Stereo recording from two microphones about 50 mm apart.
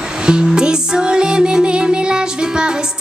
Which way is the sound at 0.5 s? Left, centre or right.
Centre.